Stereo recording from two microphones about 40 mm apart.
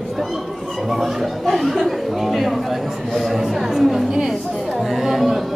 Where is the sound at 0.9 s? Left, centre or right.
Centre.